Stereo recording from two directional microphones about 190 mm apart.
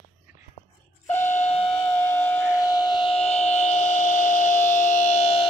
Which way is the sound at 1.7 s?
10° left (ahead or behind).